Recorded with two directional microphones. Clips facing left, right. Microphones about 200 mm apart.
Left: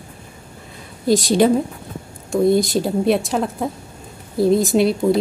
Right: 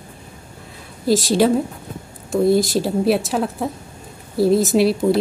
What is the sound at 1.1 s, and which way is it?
A woman's voice, centre (ahead or behind).